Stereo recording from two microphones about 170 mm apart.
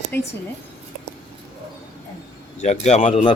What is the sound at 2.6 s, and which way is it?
Speech, 40° left (ahead or behind).